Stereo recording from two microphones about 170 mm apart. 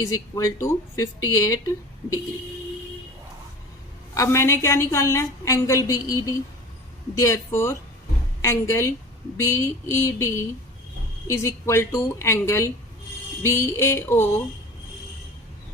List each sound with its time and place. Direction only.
0.0 s speech: 20° left (ahead or behind)
4.1 s a woman's voice: 15° left (ahead or behind)